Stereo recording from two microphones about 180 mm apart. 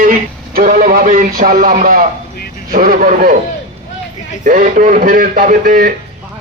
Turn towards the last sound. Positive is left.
turn(degrees=-50)  # may be behind; listen again after turning